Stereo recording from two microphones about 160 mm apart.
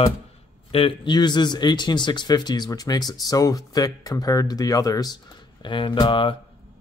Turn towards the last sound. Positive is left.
turn(degrees=30)  # may be behind; listen again after turning